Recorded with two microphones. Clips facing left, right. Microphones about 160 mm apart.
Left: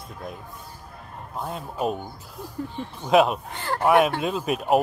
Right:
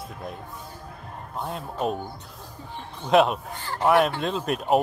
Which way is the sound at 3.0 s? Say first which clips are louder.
Left 1 dB; centre (ahead or behind).